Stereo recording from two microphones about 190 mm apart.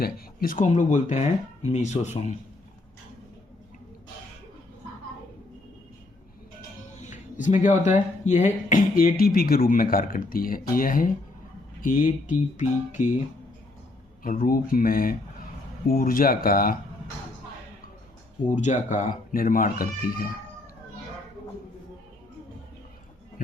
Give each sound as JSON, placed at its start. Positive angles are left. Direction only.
{"t": 0.0, "sound": "speech", "side_deg": 50}
{"t": 7.1, "sound": "speech", "side_deg": 40}
{"t": 14.3, "sound": "speech", "side_deg": 50}
{"t": 18.4, "sound": "speech", "side_deg": 40}